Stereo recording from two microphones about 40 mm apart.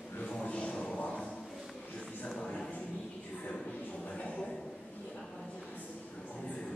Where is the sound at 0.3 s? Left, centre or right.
Left.